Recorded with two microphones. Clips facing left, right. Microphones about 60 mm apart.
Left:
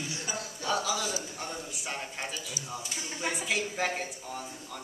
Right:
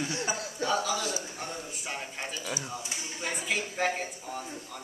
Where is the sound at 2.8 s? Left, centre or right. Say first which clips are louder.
Even; right.